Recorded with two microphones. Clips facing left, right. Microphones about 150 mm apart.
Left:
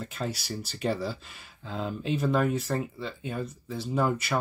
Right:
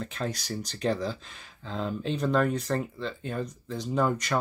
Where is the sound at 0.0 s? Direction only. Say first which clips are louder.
Right 1 dB; 5° left (ahead or behind).